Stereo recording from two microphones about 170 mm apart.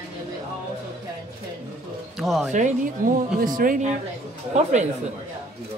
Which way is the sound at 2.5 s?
50° right (ahead or behind).